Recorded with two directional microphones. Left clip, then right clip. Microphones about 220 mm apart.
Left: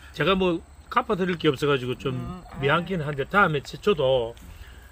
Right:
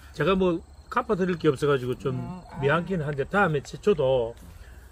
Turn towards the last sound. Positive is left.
turn(degrees=10)  # may be behind; listen again after turning